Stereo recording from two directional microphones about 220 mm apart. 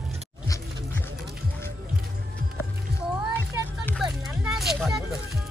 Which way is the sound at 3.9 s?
Centre (ahead or behind).